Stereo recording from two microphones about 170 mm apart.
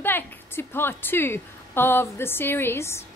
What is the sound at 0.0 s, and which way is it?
A woman's voice, 15° left (ahead or behind).